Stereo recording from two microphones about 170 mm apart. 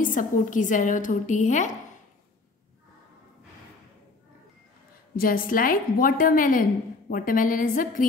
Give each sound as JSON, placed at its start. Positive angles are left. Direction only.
{"t": 0.0, "sound": "a woman's voice", "side_deg": 50}
{"t": 5.1, "sound": "a woman's voice", "side_deg": 55}